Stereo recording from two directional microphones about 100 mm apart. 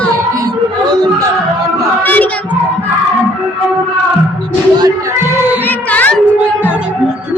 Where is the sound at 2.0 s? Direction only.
15° left (ahead or behind).